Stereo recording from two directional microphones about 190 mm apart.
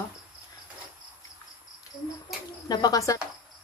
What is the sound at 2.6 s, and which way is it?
Speech, 20° left (ahead or behind).